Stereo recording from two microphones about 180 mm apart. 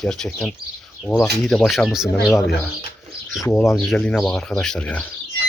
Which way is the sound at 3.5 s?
5° left (ahead or behind).